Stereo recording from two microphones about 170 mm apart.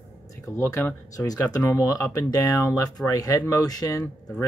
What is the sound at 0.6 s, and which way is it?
Speech, 15° left (ahead or behind).